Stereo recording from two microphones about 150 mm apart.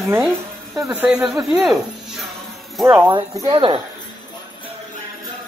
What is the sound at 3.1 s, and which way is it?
Speech, 30° right (ahead or behind).